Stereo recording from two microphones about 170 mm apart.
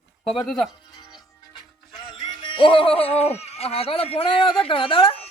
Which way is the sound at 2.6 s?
30° left (ahead or behind).